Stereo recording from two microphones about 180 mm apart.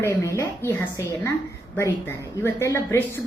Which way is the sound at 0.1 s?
15° left (ahead or behind).